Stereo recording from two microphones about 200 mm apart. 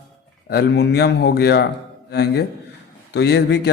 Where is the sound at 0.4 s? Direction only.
55° left (ahead or behind).